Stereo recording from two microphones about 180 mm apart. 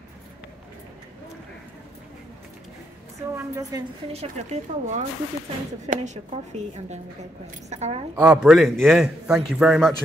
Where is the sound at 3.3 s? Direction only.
15° right (ahead or behind).